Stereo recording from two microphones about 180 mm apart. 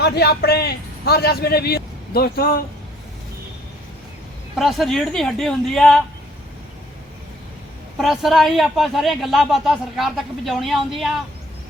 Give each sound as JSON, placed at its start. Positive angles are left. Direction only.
{"t": 0.0, "sound": "a man's voice", "side_deg": 65}
{"t": 4.5, "sound": "speech", "side_deg": 0}
{"t": 7.9, "sound": "speech", "side_deg": 0}